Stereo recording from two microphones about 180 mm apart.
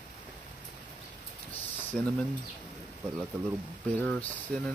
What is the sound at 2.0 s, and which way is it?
Speech, 5° left (ahead or behind).